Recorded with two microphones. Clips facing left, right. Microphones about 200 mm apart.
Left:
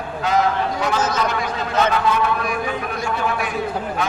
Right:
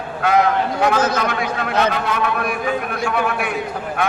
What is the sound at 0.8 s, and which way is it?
Speech, 55° right (ahead or behind).